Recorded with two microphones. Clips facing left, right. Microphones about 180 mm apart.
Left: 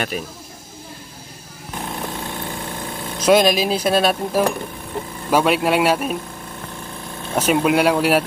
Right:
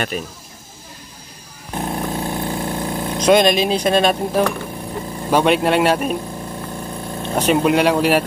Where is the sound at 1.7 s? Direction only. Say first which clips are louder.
Right 5 dB; 40° right (ahead or behind).